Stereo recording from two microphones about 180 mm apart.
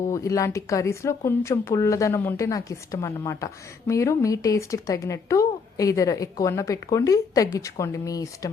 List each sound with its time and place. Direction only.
0.1 s speech: 20° left (ahead or behind)